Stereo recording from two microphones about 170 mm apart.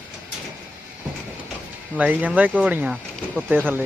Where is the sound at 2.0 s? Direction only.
10° right (ahead or behind).